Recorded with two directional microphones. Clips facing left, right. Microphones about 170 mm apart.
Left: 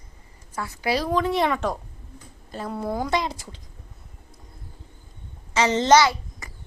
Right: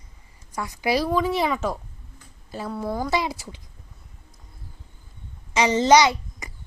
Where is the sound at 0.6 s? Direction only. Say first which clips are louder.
Right 2 dB; 15° right (ahead or behind).